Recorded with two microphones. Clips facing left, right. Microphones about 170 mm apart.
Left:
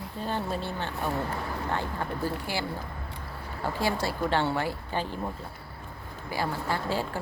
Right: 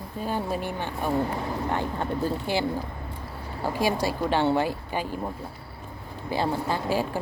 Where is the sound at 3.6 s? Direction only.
15° right (ahead or behind).